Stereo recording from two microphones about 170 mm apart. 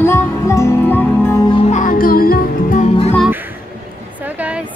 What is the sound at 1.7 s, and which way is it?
Music, 55° left (ahead or behind).